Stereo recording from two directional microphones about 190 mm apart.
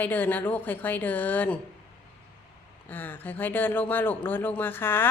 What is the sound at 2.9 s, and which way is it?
A woman's voice, 10° left (ahead or behind).